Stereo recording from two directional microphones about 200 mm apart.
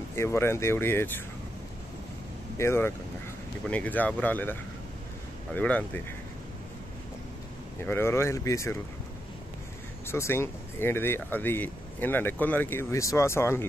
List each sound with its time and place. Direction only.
0.1 s speech: 15° left (ahead or behind)
2.5 s speech: 15° left (ahead or behind)
7.8 s speech: 10° left (ahead or behind)
10.0 s speech: 10° left (ahead or behind)